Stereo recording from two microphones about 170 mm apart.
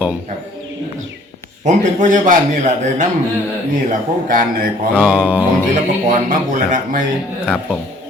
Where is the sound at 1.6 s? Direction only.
45° right (ahead or behind).